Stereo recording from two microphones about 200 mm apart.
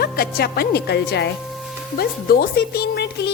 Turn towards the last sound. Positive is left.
turn(degrees=55)  # may be behind; listen again after turning